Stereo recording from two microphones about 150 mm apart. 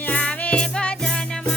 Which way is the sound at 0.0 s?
10° left (ahead or behind).